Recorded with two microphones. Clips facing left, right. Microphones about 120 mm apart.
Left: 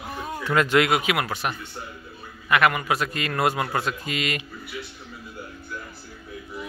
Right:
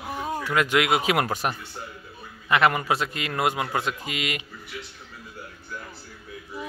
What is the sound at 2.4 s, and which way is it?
A man's voice, 25° right (ahead or behind).